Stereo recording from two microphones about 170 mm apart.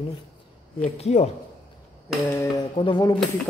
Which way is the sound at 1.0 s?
40° left (ahead or behind).